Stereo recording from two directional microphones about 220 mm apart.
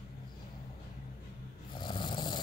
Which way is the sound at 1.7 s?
20° left (ahead or behind).